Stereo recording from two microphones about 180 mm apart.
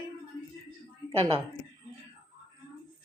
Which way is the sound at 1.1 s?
35° right (ahead or behind).